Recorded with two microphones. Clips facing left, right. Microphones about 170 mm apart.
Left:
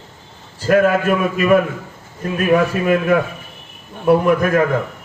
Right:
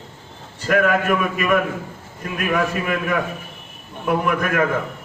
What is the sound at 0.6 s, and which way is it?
A man's voice, 35° left (ahead or behind).